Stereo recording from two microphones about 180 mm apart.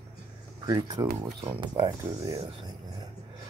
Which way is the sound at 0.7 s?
20° right (ahead or behind).